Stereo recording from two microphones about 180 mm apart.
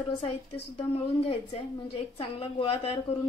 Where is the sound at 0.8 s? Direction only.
30° left (ahead or behind).